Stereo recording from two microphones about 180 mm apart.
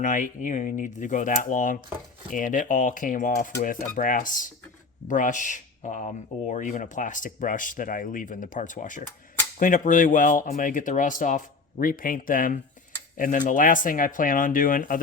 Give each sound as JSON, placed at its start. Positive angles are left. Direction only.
{"t": 0.0, "sound": "speech", "side_deg": 45}